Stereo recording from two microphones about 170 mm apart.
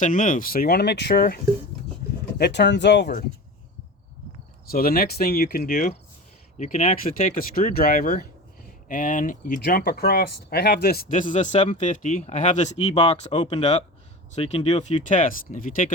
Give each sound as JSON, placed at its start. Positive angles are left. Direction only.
{"t": 0.0, "sound": "speech", "side_deg": 50}
{"t": 2.4, "sound": "speech", "side_deg": 85}
{"t": 4.7, "sound": "speech", "side_deg": 60}
{"t": 7.1, "sound": "speech", "side_deg": 55}
{"t": 9.6, "sound": "speech", "side_deg": 60}
{"t": 13.4, "sound": "speech", "side_deg": 25}
{"t": 14.3, "sound": "speech", "side_deg": 40}